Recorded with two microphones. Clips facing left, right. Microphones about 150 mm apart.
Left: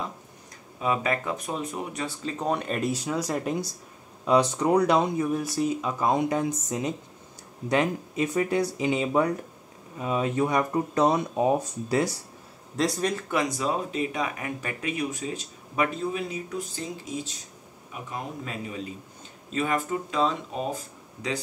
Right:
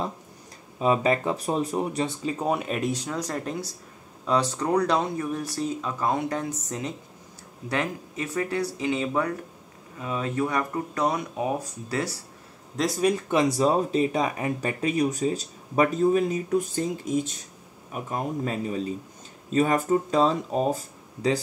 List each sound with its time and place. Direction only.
0.7 s speech: 25° right (ahead or behind)
2.0 s speech: 10° right (ahead or behind); by 12.1 s 20° left (ahead or behind)
12.7 s speech: 5° right (ahead or behind)
13.1 s speech: 25° right (ahead or behind)